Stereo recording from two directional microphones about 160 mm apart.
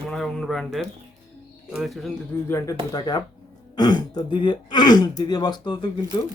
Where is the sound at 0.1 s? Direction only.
Centre (ahead or behind).